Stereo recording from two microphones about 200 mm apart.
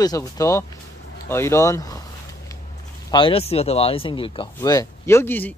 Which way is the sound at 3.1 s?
25° left (ahead or behind).